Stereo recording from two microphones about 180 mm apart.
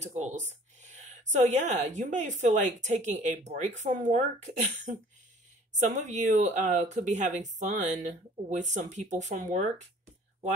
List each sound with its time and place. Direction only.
0.0 s speech: 40° right (ahead or behind)
5.8 s speech: 40° right (ahead or behind)